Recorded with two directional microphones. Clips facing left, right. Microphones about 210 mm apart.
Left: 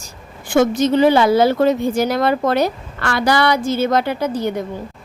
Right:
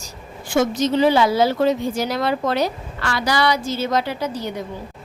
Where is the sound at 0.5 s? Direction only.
55° left (ahead or behind).